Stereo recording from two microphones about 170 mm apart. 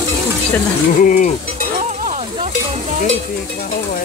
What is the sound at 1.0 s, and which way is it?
Speech, 50° left (ahead or behind).